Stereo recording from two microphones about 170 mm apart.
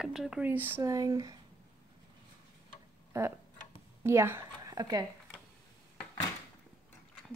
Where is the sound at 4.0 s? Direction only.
15° right (ahead or behind).